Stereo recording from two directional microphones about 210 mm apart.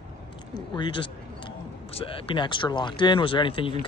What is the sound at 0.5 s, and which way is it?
A man's voice, 20° left (ahead or behind).